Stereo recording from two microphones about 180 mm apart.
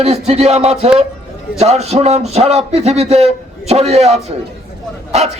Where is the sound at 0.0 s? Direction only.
35° right (ahead or behind).